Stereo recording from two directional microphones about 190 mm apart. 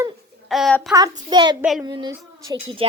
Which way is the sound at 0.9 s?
20° right (ahead or behind).